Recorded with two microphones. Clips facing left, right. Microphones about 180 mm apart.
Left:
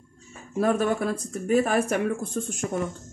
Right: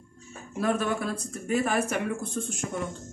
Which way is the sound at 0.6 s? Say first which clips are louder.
Left 4 dB; 45° left (ahead or behind).